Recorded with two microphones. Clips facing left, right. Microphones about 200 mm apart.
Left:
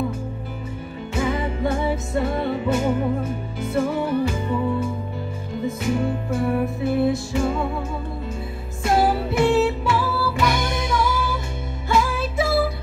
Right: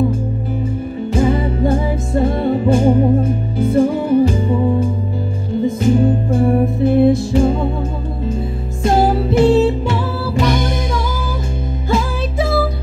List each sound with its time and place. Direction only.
1.1 s music: 35° right (ahead or behind)
8.8 s music: 35° right (ahead or behind)
11.9 s music: 30° right (ahead or behind)